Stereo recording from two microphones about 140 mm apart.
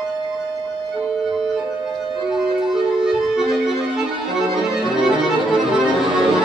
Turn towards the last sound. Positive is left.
turn(degrees=-5)  # may be behind; listen again after turning